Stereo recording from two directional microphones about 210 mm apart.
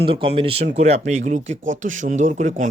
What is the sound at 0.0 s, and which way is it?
Speech, 25° right (ahead or behind).